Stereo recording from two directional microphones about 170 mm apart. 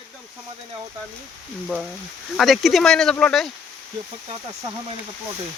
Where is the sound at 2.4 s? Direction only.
Centre (ahead or behind).